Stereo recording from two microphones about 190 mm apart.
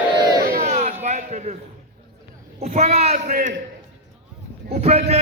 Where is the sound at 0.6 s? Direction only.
35° right (ahead or behind).